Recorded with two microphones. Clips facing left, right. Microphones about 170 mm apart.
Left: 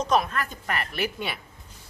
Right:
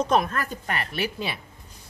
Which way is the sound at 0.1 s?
45° right (ahead or behind).